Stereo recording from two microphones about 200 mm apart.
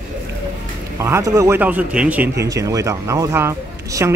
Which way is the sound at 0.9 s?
15° right (ahead or behind).